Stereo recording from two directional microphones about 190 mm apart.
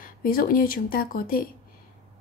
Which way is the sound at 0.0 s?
50° left (ahead or behind).